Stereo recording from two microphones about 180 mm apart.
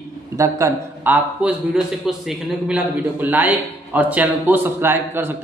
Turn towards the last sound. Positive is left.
turn(degrees=-10)  # may be behind; listen again after turning